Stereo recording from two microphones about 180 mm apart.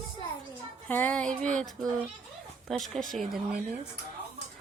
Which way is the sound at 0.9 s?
10° left (ahead or behind).